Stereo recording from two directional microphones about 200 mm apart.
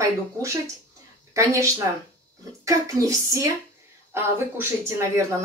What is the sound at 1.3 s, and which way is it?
Speech, 15° right (ahead or behind).